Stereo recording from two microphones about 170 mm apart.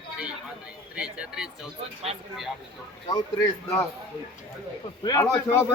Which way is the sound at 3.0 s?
20° left (ahead or behind).